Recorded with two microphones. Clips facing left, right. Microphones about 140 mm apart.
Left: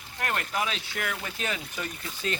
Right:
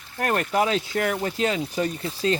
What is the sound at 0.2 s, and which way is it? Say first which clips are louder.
Speech: right 8 dB; 35° right (ahead or behind).